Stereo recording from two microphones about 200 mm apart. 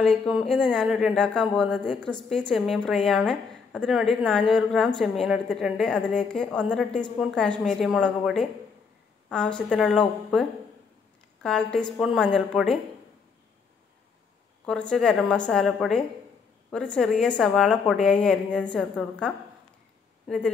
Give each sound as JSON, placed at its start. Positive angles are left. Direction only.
{"t": 0.0, "sound": "a woman's voice", "side_deg": 5}
{"t": 11.4, "sound": "a woman's voice", "side_deg": 5}
{"t": 14.7, "sound": "a woman's voice", "side_deg": 5}